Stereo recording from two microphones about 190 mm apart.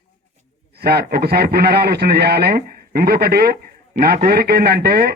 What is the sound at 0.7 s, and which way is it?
A man's voice, 55° right (ahead or behind).